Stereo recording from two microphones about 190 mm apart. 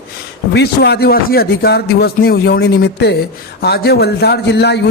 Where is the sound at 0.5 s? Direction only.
60° left (ahead or behind).